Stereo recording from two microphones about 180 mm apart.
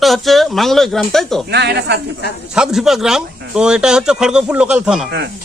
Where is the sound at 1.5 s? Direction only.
65° right (ahead or behind).